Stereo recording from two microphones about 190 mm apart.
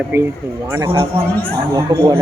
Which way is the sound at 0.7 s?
20° right (ahead or behind).